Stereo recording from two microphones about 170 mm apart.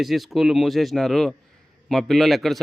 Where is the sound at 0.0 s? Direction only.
Centre (ahead or behind).